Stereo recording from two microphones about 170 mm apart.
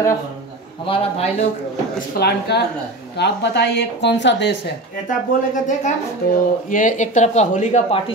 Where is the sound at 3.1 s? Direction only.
85° left.